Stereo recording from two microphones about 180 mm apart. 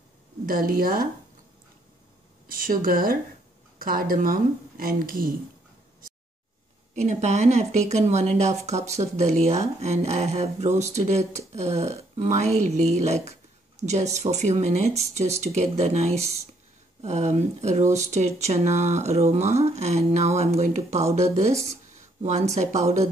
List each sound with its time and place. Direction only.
0.5 s speech: 50° right (ahead or behind)
2.5 s speech: 50° right (ahead or behind)
7.0 s speech: 40° right (ahead or behind)